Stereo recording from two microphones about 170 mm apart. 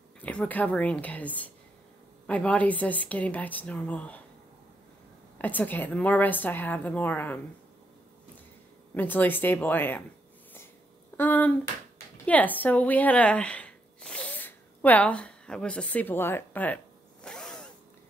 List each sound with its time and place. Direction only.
0.2 s a woman's voice: 10° left (ahead or behind)
5.4 s a woman's voice: 10° left (ahead or behind)
8.9 s a woman's voice: 10° left (ahead or behind)
11.1 s a woman's voice: 10° left (ahead or behind)
12.3 s a sound: 10° left (ahead or behind)